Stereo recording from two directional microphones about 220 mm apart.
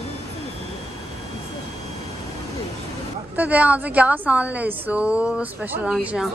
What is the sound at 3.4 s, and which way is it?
A woman's voice, 5° right (ahead or behind).